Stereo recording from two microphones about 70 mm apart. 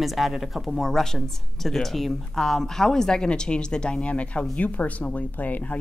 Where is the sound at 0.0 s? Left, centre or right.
Centre.